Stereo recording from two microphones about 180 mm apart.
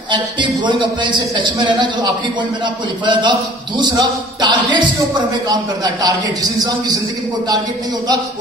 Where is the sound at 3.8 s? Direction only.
25° right (ahead or behind).